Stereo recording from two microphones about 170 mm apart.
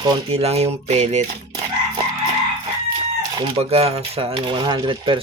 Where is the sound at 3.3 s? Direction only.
35° right (ahead or behind).